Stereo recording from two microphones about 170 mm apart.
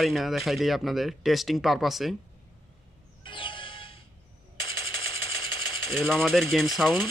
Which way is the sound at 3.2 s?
30° left (ahead or behind).